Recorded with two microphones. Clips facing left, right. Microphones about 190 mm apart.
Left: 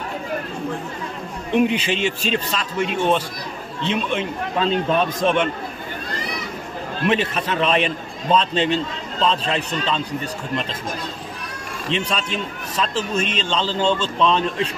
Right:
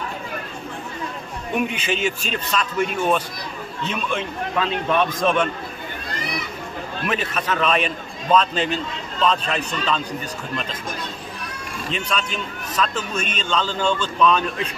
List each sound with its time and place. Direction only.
1.6 s a man's voice: 30° left (ahead or behind)
7.1 s a man's voice: 30° left (ahead or behind)
11.9 s a man's voice: 30° left (ahead or behind)